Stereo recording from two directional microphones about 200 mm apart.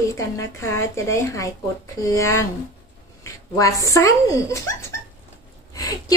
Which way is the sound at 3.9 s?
15° left (ahead or behind).